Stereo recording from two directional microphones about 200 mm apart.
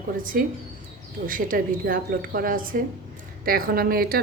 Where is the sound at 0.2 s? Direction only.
45° right (ahead or behind).